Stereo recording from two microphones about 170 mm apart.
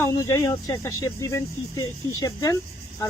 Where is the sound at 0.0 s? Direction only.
15° left (ahead or behind).